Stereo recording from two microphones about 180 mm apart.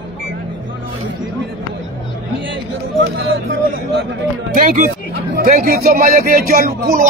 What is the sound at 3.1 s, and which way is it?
Speech, 90° right.